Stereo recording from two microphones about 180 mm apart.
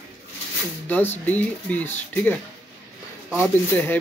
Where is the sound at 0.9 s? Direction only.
10° left (ahead or behind).